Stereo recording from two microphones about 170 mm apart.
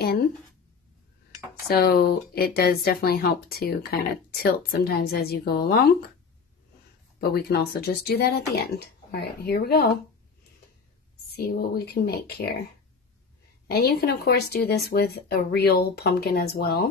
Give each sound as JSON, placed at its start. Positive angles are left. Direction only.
{"t": 1.7, "sound": "speech", "side_deg": 65}
{"t": 7.2, "sound": "speech", "side_deg": 65}
{"t": 11.3, "sound": "speech", "side_deg": 70}
{"t": 13.7, "sound": "speech", "side_deg": 65}